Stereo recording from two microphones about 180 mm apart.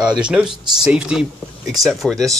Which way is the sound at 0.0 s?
5° right (ahead or behind).